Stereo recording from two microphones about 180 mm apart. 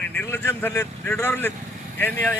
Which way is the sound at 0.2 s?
10° left (ahead or behind).